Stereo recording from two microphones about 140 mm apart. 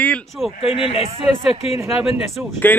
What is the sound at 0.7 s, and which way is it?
Speech, 40° left (ahead or behind).